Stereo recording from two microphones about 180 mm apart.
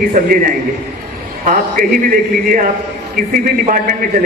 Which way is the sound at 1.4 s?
50° right (ahead or behind).